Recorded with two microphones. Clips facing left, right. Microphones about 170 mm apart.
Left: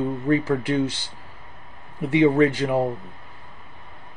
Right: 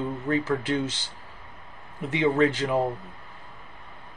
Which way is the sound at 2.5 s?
15° left (ahead or behind).